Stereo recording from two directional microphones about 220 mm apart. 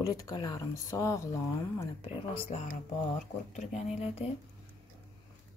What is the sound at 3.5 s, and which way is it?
Speech, 30° left (ahead or behind).